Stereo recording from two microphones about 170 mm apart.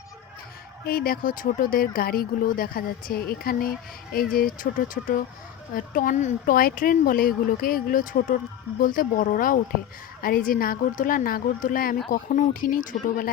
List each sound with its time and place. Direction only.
0.9 s speech: 60° left (ahead or behind)